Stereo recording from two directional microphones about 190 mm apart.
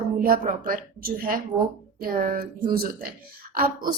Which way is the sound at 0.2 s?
45° right (ahead or behind).